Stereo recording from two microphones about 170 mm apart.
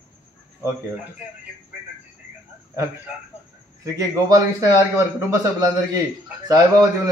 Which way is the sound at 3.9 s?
20° right (ahead or behind).